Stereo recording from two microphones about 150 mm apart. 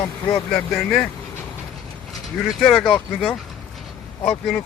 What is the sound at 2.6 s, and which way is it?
Speech, centre (ahead or behind).